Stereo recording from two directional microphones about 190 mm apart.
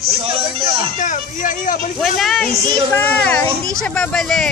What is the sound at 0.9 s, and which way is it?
Speech, 40° left (ahead or behind).